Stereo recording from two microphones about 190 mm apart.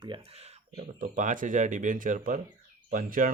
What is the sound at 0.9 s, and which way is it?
Speech, 40° right (ahead or behind).